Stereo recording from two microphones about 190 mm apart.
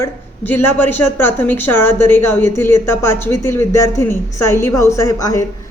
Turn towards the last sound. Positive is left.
turn(degrees=15)  # may be behind; listen again after turning